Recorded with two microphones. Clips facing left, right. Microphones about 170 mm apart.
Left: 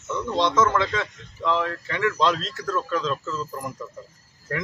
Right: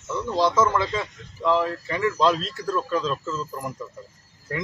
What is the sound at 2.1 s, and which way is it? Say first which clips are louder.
A man's voice: right 2 dB; 5° right (ahead or behind).